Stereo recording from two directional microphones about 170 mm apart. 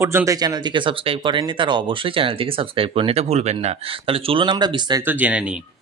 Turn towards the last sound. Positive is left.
turn(degrees=-5)  # may be behind; listen again after turning